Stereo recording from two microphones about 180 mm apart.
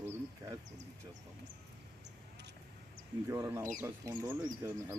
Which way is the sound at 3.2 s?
15° right (ahead or behind).